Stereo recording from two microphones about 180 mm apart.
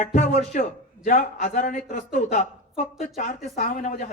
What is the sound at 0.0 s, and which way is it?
A man's voice, 40° left (ahead or behind).